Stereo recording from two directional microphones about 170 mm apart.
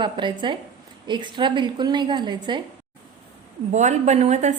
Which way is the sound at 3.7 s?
45° right (ahead or behind).